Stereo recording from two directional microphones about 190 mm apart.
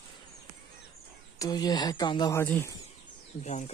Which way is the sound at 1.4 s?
20° left (ahead or behind).